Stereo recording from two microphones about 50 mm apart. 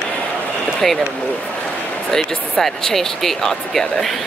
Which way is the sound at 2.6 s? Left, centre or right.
Centre.